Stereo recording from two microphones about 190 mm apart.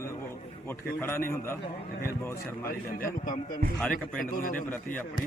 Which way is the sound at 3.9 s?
45° left (ahead or behind).